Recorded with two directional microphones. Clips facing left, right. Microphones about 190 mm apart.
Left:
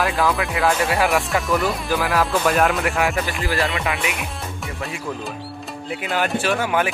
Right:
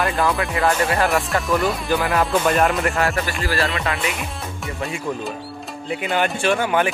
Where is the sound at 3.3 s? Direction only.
20° left (ahead or behind).